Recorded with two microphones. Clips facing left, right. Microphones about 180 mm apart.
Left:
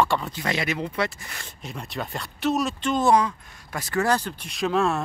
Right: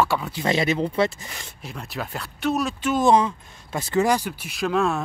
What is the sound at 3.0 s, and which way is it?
Speech, 25° right (ahead or behind).